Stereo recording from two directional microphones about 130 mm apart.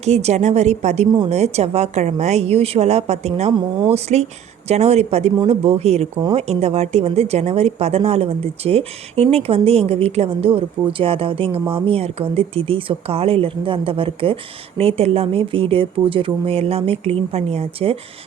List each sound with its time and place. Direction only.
0.0 s a woman's voice: 55° right (ahead or behind)